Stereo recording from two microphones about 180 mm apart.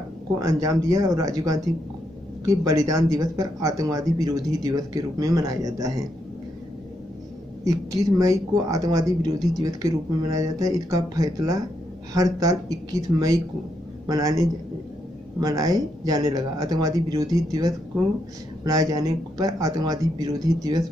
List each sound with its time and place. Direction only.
0.4 s speech: 20° right (ahead or behind)
7.6 s speech: 20° right (ahead or behind)